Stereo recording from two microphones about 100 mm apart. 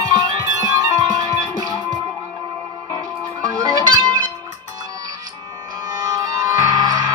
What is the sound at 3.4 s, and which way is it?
Music, 40° right (ahead or behind).